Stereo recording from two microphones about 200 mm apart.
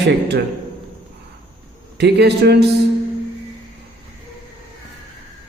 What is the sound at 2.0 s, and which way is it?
Speech, 55° right (ahead or behind).